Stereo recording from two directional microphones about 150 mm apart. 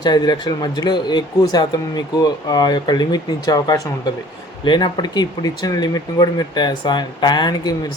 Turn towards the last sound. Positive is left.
turn(degrees=30)  # may be behind; listen again after turning